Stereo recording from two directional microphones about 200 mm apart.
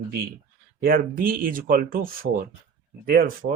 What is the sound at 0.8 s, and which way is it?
Speech, 45° right (ahead or behind).